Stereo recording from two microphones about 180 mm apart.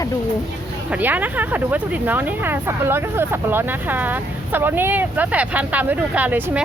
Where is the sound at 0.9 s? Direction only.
10° right (ahead or behind).